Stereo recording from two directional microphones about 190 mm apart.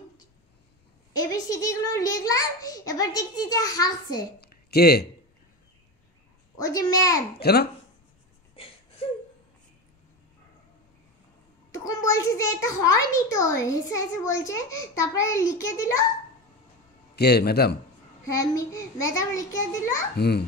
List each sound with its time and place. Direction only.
1.1 s a child's voice: 20° left (ahead or behind)
4.4 s a sound: 55° left (ahead or behind)
6.6 s a child's voice: 20° left (ahead or behind)
7.3 s a man's voice: 55° left (ahead or behind)
11.7 s a child's voice: 20° left (ahead or behind)
17.1 s a man's voice: 60° left (ahead or behind)
18.3 s a child's voice: 15° left (ahead or behind)
20.2 s a man's voice: 60° left (ahead or behind)